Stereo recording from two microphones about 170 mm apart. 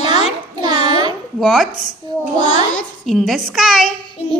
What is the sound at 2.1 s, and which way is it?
Speech, 25° right (ahead or behind).